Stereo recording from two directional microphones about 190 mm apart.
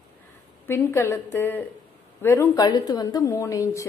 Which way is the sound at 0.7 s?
15° left (ahead or behind).